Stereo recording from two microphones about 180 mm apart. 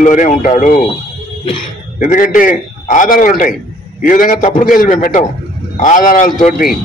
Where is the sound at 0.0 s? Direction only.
45° left (ahead or behind).